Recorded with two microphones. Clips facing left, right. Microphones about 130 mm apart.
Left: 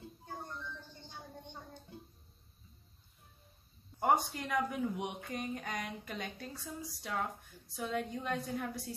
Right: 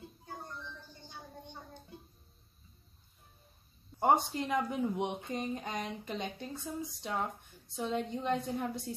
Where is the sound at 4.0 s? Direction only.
25° right (ahead or behind).